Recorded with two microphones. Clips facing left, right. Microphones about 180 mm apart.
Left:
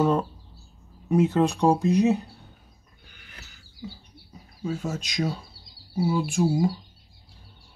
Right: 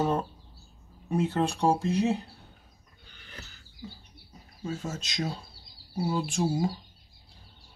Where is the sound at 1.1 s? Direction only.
15° left (ahead or behind).